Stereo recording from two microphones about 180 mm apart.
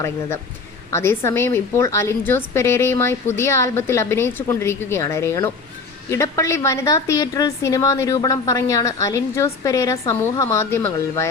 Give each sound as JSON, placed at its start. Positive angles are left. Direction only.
{"t": 0.9, "sound": "a woman's voice", "side_deg": 15}